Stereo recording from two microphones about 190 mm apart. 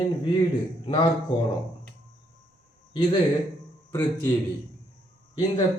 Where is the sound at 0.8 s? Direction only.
25° left (ahead or behind).